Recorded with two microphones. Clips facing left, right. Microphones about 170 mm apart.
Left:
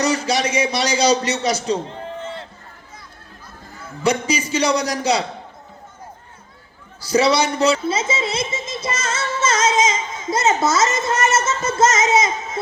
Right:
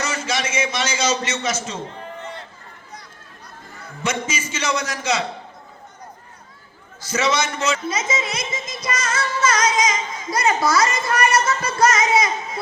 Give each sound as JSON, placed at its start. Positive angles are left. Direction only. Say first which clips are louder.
{"t": 0.0, "sound": "a man's voice", "louder": "left 6 dB", "side_deg": 35}
{"t": 4.0, "sound": "a man's voice", "louder": "left 6 dB", "side_deg": 35}
{"t": 7.1, "sound": "speech", "louder": "left 5 dB", "side_deg": 35}